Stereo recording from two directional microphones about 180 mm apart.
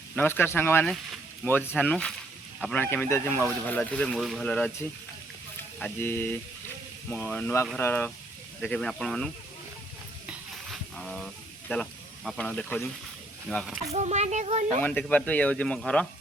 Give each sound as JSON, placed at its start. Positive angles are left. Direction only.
{"t": 0.2, "sound": "speech", "side_deg": 10}
{"t": 10.2, "sound": "stir", "side_deg": 0}
{"t": 11.7, "sound": "speech", "side_deg": 5}
{"t": 13.9, "sound": "speech", "side_deg": -40}
{"t": 14.8, "sound": "speech", "side_deg": 10}